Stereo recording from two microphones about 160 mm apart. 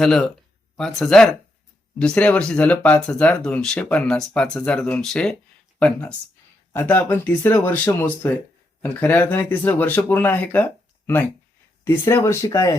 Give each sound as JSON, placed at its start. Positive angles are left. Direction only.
{"t": 0.0, "sound": "speech", "side_deg": 5}